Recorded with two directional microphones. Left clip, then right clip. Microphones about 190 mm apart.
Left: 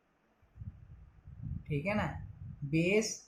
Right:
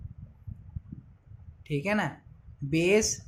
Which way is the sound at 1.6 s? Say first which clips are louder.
Right 6 dB; 55° right (ahead or behind).